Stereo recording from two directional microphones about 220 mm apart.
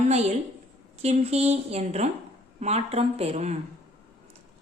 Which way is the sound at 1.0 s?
30° right (ahead or behind).